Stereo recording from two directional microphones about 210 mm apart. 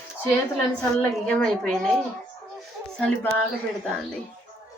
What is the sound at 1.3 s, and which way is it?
Speech, 5° left (ahead or behind).